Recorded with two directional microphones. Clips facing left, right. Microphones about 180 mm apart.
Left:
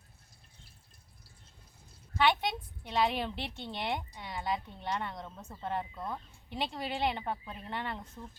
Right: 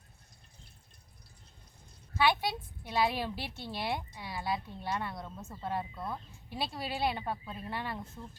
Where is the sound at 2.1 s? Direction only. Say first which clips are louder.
Even; 5° right (ahead or behind).